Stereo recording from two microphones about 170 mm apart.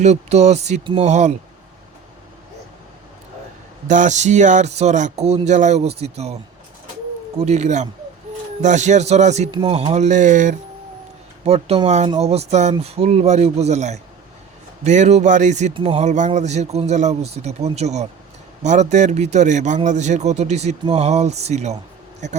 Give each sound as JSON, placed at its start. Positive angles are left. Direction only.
{"t": 0.0, "sound": "speech", "side_deg": -40}
{"t": 3.8, "sound": "speech", "side_deg": -45}
{"t": 7.3, "sound": "speech", "side_deg": -40}
{"t": 9.5, "sound": "speech", "side_deg": -30}
{"t": 11.4, "sound": "speech", "side_deg": -35}
{"t": 15.7, "sound": "speech", "side_deg": -30}
{"t": 16.0, "sound": "speech", "side_deg": -45}